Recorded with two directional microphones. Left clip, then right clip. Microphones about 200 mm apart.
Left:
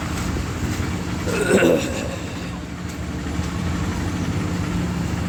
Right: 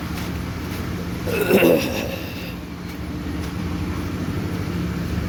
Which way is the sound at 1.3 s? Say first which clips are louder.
Right 1 dB; 15° right (ahead or behind).